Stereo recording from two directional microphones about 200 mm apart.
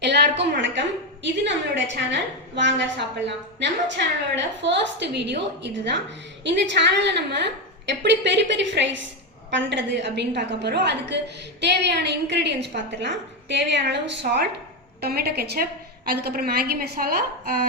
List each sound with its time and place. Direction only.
0.0 s a woman's voice: 60° right (ahead or behind)